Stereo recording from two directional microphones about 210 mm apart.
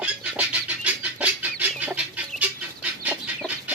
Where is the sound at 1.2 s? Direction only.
5° right (ahead or behind).